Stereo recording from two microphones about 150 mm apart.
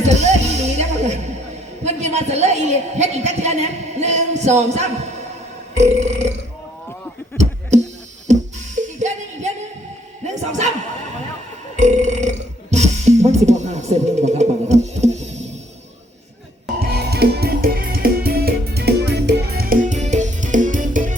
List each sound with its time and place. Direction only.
0.0 s music: 50° right (ahead or behind)
1.8 s a sound: 50° right (ahead or behind)
5.7 s burping: 50° right (ahead or behind)
8.3 s music: 50° right (ahead or behind)
11.8 s burping: 55° right (ahead or behind)
16.8 s music: 90° right; by 21.2 s 60° right (ahead or behind)